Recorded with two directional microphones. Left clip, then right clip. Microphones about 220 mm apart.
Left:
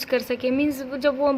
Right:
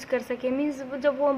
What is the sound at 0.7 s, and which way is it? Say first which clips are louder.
Speech: left 3 dB; 55° left (ahead or behind).